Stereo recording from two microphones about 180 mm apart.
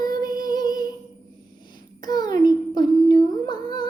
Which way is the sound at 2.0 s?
20° left (ahead or behind).